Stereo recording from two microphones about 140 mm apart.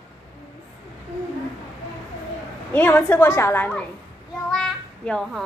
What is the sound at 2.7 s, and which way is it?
A woman's voice, 15° left (ahead or behind).